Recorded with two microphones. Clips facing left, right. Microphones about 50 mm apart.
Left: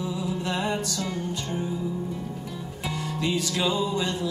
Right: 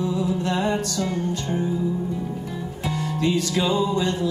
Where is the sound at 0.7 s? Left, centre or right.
Centre.